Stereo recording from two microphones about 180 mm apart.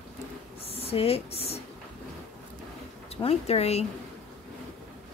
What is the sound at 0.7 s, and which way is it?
Speech, 35° left (ahead or behind).